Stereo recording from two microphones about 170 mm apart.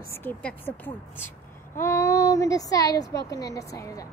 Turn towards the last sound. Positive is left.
turn(degrees=20)  # may be behind; listen again after turning